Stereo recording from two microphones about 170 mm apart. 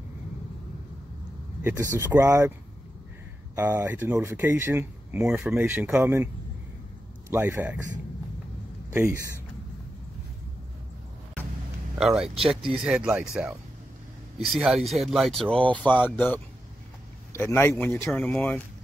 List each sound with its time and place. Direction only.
1.6 s speech: 15° right (ahead or behind)
3.5 s speech: 10° right (ahead or behind)
7.2 s speech: 15° right (ahead or behind)
8.9 s speech: 15° right (ahead or behind)
12.0 s a man's voice: 5° right (ahead or behind)